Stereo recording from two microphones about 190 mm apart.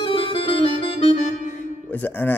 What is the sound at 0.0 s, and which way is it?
Music, 30° left (ahead or behind).